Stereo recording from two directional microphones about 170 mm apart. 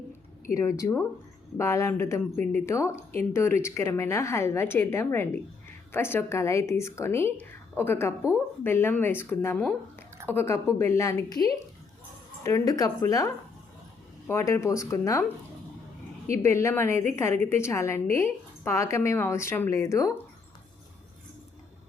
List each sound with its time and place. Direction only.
0.5 s a woman's voice: 15° left (ahead or behind)
16.3 s a woman's voice: 15° left (ahead or behind)